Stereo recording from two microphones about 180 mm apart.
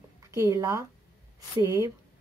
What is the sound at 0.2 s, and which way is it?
A woman's voice, 15° right (ahead or behind).